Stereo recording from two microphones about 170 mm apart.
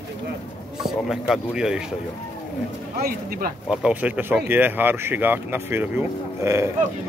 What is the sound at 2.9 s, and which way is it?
Speech, 60° right (ahead or behind).